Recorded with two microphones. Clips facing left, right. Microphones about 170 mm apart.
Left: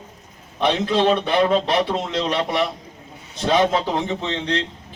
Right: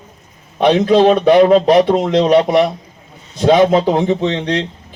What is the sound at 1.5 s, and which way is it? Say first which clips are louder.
Speech: right 10 dB; 45° right (ahead or behind).